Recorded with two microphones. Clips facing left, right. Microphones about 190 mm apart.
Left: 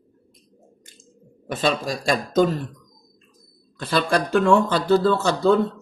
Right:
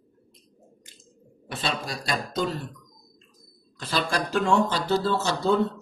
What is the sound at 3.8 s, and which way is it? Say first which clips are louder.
Speech: left 6 dB; 60° left (ahead or behind).